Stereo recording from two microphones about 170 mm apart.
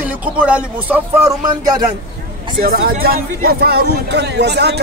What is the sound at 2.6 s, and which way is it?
Speech, 60° right (ahead or behind).